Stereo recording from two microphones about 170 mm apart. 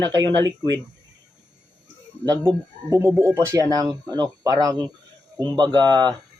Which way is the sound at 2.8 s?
15° right (ahead or behind).